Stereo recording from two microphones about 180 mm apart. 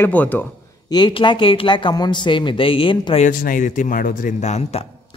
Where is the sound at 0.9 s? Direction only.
25° left (ahead or behind).